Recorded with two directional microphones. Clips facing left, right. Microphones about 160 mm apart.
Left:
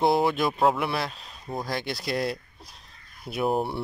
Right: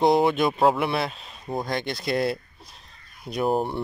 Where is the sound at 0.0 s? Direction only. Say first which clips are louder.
Right 3 dB; centre (ahead or behind).